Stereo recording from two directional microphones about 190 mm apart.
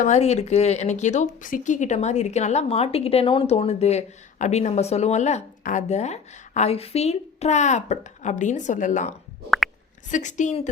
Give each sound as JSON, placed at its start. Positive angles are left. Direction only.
{"t": 0.0, "sound": "speech", "side_deg": 35}